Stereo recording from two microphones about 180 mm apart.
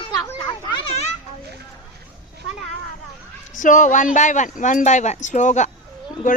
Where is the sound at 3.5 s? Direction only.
45° left (ahead or behind).